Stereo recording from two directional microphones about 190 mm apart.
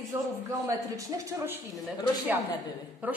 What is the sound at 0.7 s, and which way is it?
Speech, 15° right (ahead or behind).